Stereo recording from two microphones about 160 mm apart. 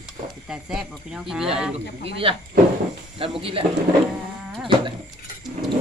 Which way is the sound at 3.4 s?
35° right (ahead or behind).